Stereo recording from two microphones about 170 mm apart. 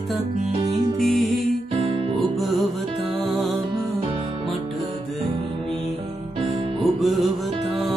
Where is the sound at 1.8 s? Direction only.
35° right (ahead or behind).